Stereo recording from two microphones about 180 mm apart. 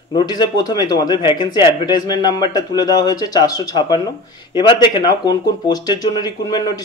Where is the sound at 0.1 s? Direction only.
25° left (ahead or behind).